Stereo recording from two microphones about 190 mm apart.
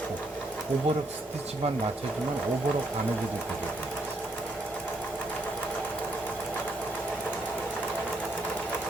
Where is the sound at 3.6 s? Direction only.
5° left (ahead or behind).